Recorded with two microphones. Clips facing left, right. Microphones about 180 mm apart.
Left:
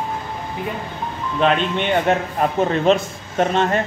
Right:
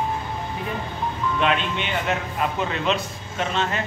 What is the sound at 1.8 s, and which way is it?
Speech, 50° left (ahead or behind).